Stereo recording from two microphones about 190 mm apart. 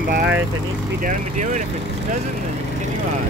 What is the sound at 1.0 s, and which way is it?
Speech, 40° right (ahead or behind).